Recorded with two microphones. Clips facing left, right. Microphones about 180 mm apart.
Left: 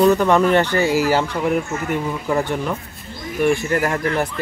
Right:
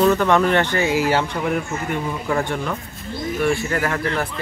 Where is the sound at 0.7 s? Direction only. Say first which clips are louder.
Left 2 dB; 40° left (ahead or behind).